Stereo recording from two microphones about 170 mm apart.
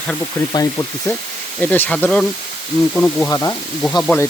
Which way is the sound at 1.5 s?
10° left (ahead or behind).